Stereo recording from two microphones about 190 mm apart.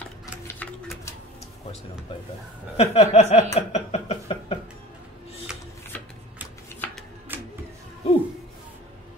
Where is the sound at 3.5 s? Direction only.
35° left (ahead or behind).